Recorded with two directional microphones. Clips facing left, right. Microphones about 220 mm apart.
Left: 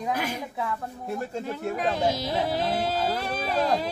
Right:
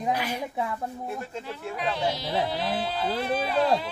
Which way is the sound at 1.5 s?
45° left (ahead or behind).